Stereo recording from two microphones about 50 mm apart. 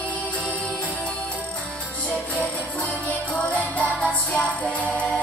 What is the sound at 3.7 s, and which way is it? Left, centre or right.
Music, left.